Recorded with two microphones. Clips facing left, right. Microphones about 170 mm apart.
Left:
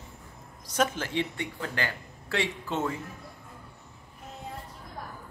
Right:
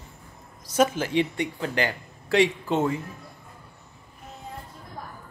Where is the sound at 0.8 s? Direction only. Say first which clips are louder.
Right 6 dB; 10° right (ahead or behind).